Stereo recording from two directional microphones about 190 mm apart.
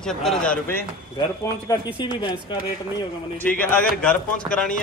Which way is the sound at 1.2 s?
20° left (ahead or behind).